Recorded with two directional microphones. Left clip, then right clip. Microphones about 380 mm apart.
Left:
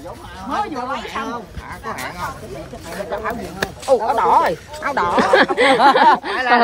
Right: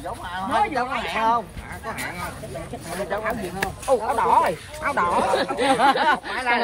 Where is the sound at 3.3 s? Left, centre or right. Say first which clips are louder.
Left 2 dB; centre.